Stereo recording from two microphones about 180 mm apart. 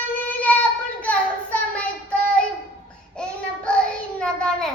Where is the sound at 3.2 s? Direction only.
5° left (ahead or behind).